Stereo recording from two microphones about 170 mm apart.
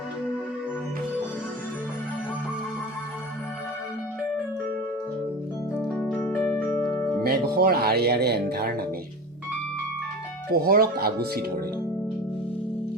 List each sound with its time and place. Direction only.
6.1 s music: 15° left (ahead or behind)
7.3 s speech: 65° right (ahead or behind)
10.5 s speech: 65° right (ahead or behind)